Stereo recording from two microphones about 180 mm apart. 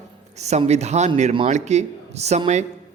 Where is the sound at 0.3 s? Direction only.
40° right (ahead or behind).